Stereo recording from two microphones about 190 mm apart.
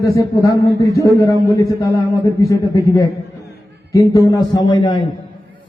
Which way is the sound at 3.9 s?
20° left (ahead or behind).